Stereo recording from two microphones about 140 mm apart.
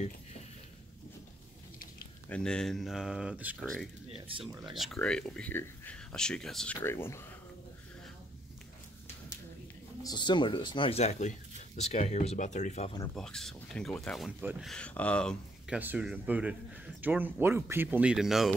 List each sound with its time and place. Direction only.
2.2 s speech: 5° left (ahead or behind); by 3.5 s 10° right (ahead or behind)
4.1 s speech: 40° right (ahead or behind)
4.7 s speech: centre (ahead or behind)
6.8 s speech: 15° left (ahead or behind)
10.0 s speech: 30° left (ahead or behind); by 12.9 s 55° left (ahead or behind)
13.1 s speech: 5° left (ahead or behind)
15.7 s speech: 10° right (ahead or behind)